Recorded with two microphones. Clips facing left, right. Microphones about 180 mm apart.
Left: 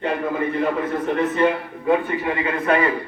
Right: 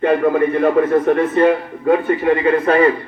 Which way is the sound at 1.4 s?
50° right (ahead or behind).